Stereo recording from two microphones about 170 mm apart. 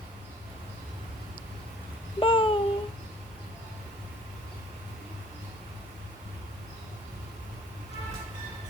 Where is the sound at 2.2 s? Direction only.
30° left (ahead or behind).